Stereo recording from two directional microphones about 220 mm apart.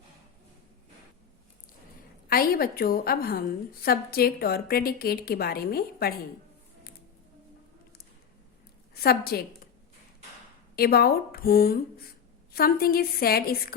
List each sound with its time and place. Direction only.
2.3 s a woman's voice: 40° left (ahead or behind)
9.0 s a woman's voice: 45° left (ahead or behind)
10.8 s a woman's voice: 45° left (ahead or behind)